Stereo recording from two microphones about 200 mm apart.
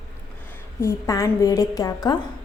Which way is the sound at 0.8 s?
15° left (ahead or behind).